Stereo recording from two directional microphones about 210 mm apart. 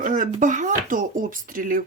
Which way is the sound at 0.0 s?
35° right (ahead or behind).